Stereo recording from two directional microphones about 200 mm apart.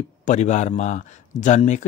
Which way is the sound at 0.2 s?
35° left (ahead or behind).